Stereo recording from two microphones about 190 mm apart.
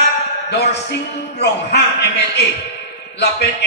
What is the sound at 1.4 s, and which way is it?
A man's voice, 60° left (ahead or behind).